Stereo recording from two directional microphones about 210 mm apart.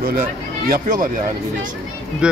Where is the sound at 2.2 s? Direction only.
5° right (ahead or behind).